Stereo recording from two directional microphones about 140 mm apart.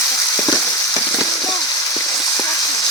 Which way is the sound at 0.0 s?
20° left (ahead or behind).